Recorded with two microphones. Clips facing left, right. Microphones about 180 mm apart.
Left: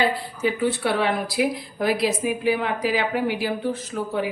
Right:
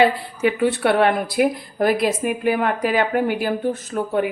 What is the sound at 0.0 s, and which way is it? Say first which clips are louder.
A woman's voice: right 5 dB; 65° right (ahead or behind).